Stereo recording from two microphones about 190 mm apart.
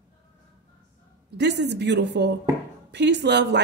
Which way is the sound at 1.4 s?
65° right (ahead or behind).